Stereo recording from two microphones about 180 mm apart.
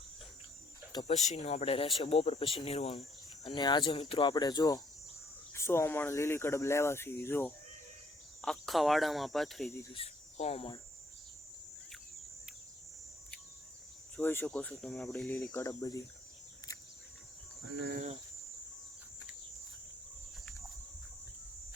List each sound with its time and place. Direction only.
1.0 s speech: 40° left (ahead or behind); by 7.5 s 10° left (ahead or behind)
8.4 s cricket: centre (ahead or behind)
9.9 s speech: 35° left (ahead or behind)
14.2 s speech: 10° left (ahead or behind)
17.6 s cricket: 90° right
17.9 s speech: 40° right (ahead or behind)